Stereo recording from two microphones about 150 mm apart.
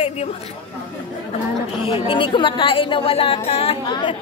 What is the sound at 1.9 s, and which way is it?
A woman's voice, 35° left (ahead or behind).